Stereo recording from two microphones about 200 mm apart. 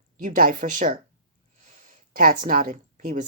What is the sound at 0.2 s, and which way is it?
Speech, 40° right (ahead or behind).